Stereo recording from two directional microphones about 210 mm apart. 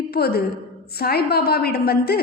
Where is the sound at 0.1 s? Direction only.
45° left (ahead or behind).